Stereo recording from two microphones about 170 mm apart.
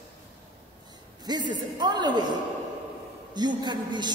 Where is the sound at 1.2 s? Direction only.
25° right (ahead or behind).